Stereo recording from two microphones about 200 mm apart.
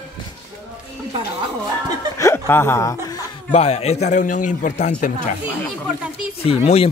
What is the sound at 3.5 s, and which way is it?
Speech, 35° left (ahead or behind).